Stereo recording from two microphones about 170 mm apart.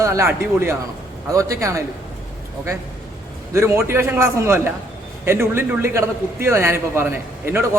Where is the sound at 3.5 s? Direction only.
15° right (ahead or behind).